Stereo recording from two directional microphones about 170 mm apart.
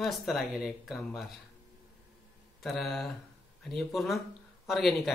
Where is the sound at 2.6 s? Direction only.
Centre (ahead or behind).